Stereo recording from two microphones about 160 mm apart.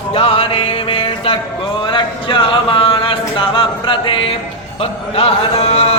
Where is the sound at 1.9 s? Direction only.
30° left (ahead or behind).